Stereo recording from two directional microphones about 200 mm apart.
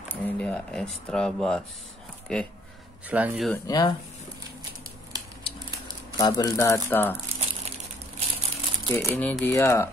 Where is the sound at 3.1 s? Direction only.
10° right (ahead or behind).